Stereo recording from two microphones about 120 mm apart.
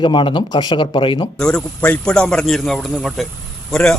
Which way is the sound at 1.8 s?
10° left (ahead or behind).